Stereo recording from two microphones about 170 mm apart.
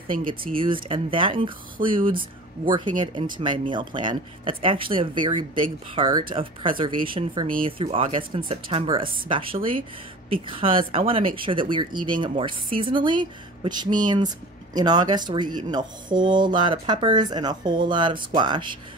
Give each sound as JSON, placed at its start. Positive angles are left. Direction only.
{"t": 0.6, "sound": "speech", "side_deg": -30}
{"t": 10.3, "sound": "speech", "side_deg": -30}